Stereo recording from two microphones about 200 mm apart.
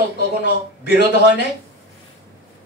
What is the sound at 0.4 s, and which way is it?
Speech, 60° left (ahead or behind).